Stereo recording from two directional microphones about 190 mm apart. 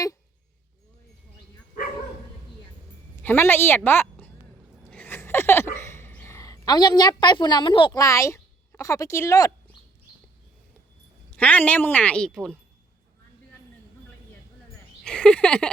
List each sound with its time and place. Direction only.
3.2 s a woman's voice: 10° left (ahead or behind)
4.8 s a sound: 10° left (ahead or behind)
11.3 s a woman's voice: 10° left (ahead or behind)
15.0 s speech: 5° left (ahead or behind)